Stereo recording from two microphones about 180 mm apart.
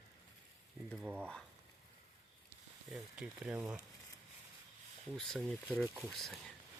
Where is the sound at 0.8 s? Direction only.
Centre (ahead or behind).